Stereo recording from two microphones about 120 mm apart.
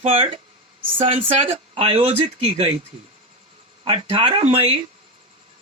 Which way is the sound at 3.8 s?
50° right (ahead or behind).